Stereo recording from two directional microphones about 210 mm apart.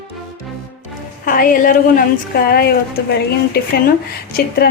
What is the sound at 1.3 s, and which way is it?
A woman's voice, 40° left (ahead or behind).